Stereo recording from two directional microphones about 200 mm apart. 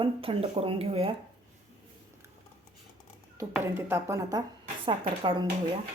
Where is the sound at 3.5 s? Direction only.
10° right (ahead or behind).